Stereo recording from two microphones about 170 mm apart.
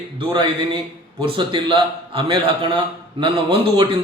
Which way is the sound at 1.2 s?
30° right (ahead or behind).